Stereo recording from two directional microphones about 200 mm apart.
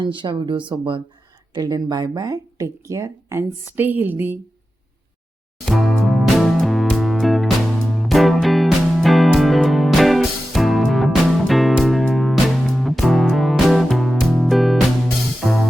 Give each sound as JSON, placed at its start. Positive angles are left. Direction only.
{"t": 0.0, "sound": "speech", "side_deg": -25}
{"t": 5.6, "sound": "music", "side_deg": 0}